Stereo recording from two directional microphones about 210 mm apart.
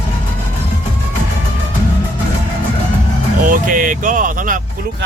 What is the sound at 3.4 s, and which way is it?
Vehicle, 40° right (ahead or behind).